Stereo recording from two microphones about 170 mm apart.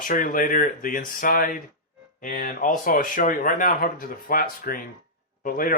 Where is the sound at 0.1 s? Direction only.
55° left (ahead or behind).